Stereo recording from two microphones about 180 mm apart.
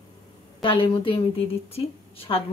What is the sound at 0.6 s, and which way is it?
A woman's voice, 30° left (ahead or behind).